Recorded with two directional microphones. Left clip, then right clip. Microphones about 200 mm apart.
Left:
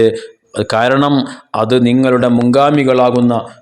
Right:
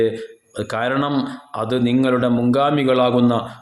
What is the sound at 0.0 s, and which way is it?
A man's voice, 40° left (ahead or behind).